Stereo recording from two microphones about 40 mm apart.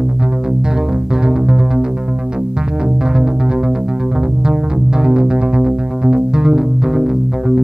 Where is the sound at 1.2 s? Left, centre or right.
Centre.